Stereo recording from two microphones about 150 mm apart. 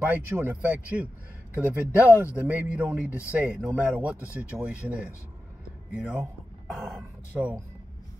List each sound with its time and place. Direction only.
0.0 s speech: 10° right (ahead or behind)
4.2 s speech: 15° left (ahead or behind)
4.6 s speech: 10° right (ahead or behind)
7.0 s speech: 10° right (ahead or behind)